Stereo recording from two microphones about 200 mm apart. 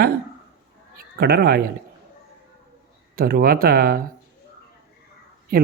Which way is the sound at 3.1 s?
45° right (ahead or behind).